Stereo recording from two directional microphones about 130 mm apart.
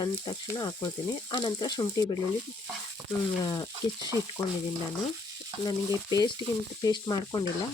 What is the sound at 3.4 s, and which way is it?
Speech, 30° left (ahead or behind).